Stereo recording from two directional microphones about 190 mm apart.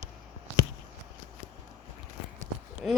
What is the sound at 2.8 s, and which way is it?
Speech, 5° right (ahead or behind).